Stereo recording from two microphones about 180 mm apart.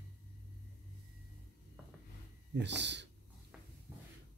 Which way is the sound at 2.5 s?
75° right (ahead or behind).